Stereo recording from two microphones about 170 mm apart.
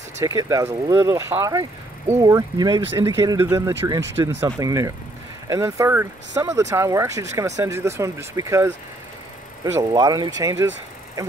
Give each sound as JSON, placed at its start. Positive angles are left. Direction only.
{"t": 0.2, "sound": "speech", "side_deg": -20}
{"t": 9.8, "sound": "speech", "side_deg": -20}